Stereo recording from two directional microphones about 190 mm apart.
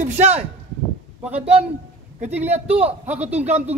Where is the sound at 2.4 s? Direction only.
35° right (ahead or behind).